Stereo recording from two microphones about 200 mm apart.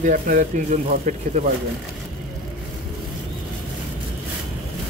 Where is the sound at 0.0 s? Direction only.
40° right (ahead or behind).